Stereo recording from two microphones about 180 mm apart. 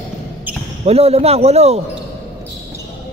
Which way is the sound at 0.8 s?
35° right (ahead or behind).